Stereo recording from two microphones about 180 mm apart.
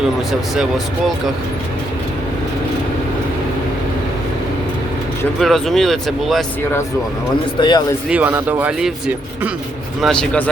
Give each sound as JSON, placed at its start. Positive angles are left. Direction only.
{"t": 0.3, "sound": "speech", "side_deg": 0}
{"t": 5.4, "sound": "speech", "side_deg": 0}
{"t": 7.6, "sound": "speech", "side_deg": 25}
{"t": 8.1, "sound": "speech", "side_deg": -10}
{"t": 10.0, "sound": "speech", "side_deg": 5}